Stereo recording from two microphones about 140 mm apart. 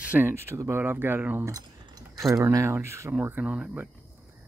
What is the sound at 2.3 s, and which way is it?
Speech, 20° right (ahead or behind).